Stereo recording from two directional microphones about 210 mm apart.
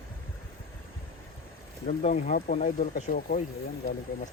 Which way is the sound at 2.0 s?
30° left (ahead or behind).